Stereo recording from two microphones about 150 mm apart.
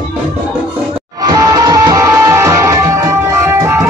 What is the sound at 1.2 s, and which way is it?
Music, 25° right (ahead or behind).